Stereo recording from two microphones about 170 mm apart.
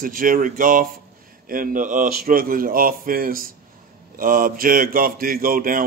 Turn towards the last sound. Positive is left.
turn(degrees=-55)  # may be behind; listen again after turning